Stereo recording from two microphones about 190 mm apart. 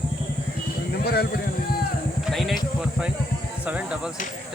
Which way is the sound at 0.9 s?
55° left (ahead or behind).